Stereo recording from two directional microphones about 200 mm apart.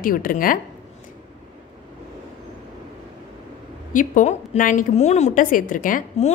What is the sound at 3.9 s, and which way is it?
A woman's voice, 40° left (ahead or behind).